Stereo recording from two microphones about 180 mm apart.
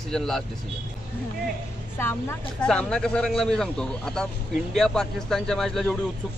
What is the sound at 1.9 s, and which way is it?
Speech, 15° left (ahead or behind).